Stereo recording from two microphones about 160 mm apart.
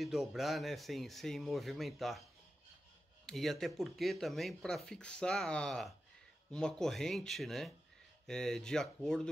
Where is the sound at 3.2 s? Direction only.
Centre (ahead or behind).